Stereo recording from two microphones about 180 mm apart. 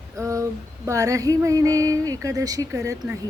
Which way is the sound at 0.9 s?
20° right (ahead or behind).